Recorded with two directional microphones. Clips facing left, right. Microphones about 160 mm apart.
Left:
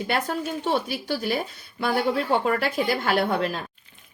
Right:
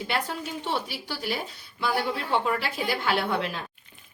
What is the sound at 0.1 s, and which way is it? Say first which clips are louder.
Speech: left 4 dB; 45° left (ahead or behind).